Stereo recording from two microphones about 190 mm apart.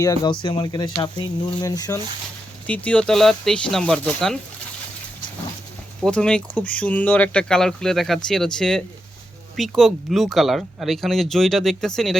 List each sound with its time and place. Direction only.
0.0 s speech: 20° left (ahead or behind)
2.6 s speech: 5° left (ahead or behind)
6.0 s speech: 5° left (ahead or behind)